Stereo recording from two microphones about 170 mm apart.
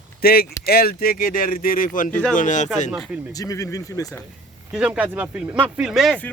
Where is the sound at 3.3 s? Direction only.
20° left (ahead or behind).